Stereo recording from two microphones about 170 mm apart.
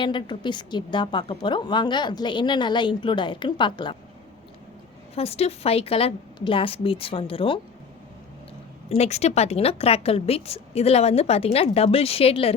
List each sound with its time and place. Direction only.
0.0 s a woman's voice: 30° left (ahead or behind)
5.1 s a woman's voice: 35° left (ahead or behind)
9.0 s a woman's voice: 40° left (ahead or behind)